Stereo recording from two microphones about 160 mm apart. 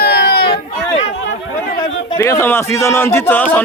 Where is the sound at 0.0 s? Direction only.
90° left.